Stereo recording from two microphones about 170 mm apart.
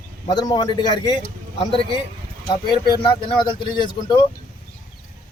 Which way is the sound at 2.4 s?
25° left (ahead or behind).